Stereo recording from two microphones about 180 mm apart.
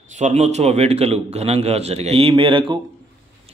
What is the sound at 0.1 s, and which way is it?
A man's voice, 40° right (ahead or behind).